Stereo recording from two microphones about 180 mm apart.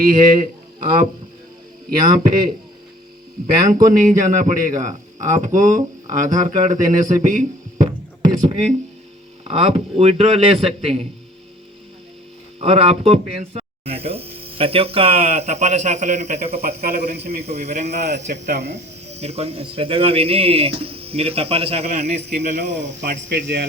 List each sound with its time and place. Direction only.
1.9 s a man's voice: 55° right (ahead or behind); by 11.0 s 35° right (ahead or behind)
12.5 s speech: 35° right (ahead or behind)
16.5 s speech: 60° right (ahead or behind)
19.0 s speech: 35° right (ahead or behind)
22.7 s speech: 75° right (ahead or behind)